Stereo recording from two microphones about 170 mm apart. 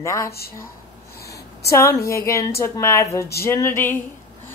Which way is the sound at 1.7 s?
15° left (ahead or behind).